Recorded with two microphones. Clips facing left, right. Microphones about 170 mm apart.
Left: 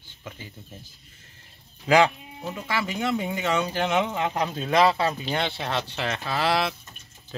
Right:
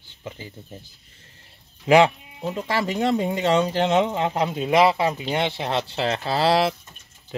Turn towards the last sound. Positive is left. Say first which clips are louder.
# right 5 dB
turn(degrees=-30)  # may be behind; listen again after turning